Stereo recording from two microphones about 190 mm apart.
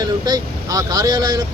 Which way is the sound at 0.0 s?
20° right (ahead or behind).